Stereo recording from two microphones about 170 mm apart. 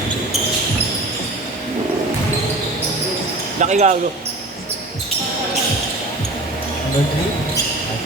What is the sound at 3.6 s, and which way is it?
Speech, 45° right (ahead or behind).